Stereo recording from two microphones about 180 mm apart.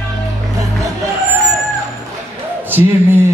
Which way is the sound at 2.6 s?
10° right (ahead or behind).